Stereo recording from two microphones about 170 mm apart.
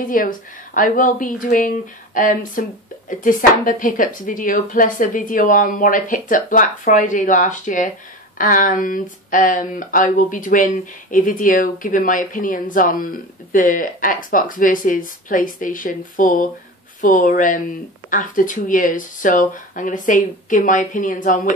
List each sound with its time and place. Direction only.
0.0 s speech: 55° left (ahead or behind)